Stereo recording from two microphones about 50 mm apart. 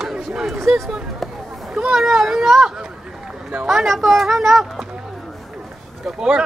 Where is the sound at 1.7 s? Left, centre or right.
Centre.